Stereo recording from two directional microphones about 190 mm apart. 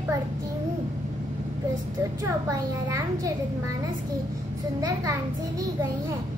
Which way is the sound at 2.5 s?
15° right (ahead or behind).